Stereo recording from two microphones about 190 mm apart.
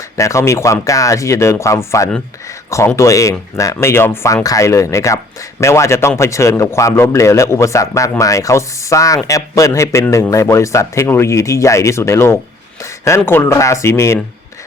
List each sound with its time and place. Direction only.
0.2 s speech: 15° left (ahead or behind)